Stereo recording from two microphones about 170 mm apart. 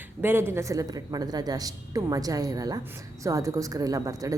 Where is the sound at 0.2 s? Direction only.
15° right (ahead or behind).